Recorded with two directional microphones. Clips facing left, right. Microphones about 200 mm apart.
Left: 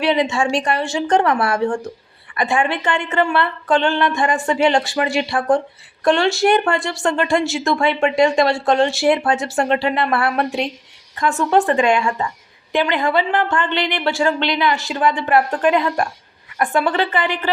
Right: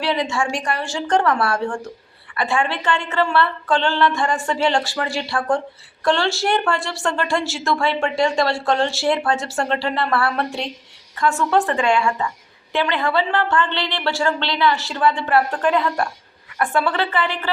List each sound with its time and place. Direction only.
0.0 s a woman's voice: 20° left (ahead or behind)